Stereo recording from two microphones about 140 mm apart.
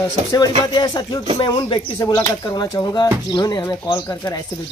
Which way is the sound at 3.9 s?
20° left (ahead or behind).